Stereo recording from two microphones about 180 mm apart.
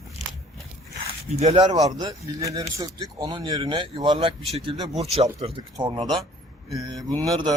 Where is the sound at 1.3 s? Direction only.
35° right (ahead or behind).